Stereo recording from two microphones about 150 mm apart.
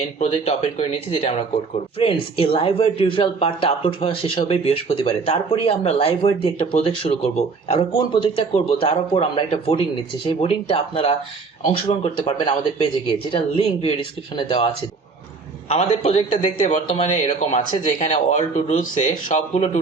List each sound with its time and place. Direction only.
0.2 s speech: 45° left (ahead or behind)
15.7 s speech: 45° left (ahead or behind)